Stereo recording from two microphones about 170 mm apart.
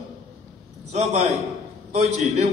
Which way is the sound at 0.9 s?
40° right (ahead or behind).